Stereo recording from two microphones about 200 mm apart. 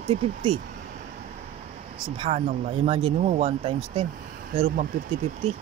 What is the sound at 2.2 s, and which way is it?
Speech, 30° right (ahead or behind).